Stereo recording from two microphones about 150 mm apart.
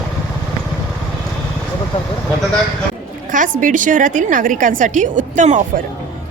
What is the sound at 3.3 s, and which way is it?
A woman's voice, 60° right (ahead or behind).